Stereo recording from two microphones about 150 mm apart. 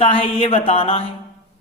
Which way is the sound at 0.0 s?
40° left (ahead or behind).